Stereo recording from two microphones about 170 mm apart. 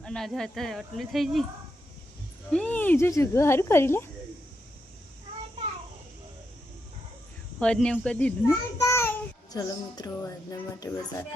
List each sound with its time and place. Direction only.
0.0 s speech: 5° left (ahead or behind)
2.5 s speech: 5° left (ahead or behind)
7.6 s speech: 5° left (ahead or behind)
8.8 s music: 15° left (ahead or behind)
10.8 s speech: 15° left (ahead or behind)